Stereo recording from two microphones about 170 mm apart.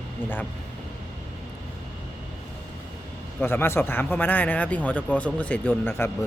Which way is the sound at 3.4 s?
15° left (ahead or behind).